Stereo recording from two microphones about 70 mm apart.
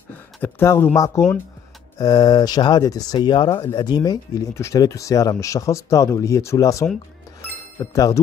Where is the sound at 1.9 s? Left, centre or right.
Left.